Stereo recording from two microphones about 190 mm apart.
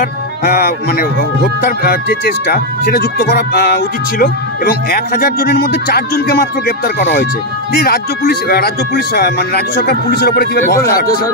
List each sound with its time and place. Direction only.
0.0 s music: 50° left (ahead or behind)
7.8 s speech: 55° left (ahead or behind)